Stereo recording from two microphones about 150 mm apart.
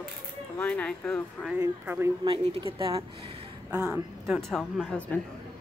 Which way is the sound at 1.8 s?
15° right (ahead or behind).